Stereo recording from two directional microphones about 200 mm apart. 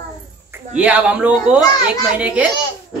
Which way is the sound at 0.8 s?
5° right (ahead or behind).